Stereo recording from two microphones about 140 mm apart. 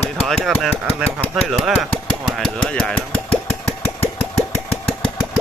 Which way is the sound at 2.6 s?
5° left (ahead or behind).